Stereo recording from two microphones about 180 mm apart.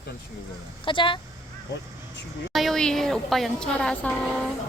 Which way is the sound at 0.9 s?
25° left (ahead or behind).